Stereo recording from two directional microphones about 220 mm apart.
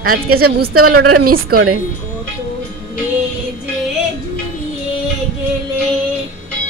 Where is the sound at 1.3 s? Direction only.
40° right (ahead or behind).